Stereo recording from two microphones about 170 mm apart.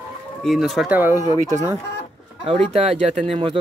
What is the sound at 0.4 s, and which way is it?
Speech, centre (ahead or behind).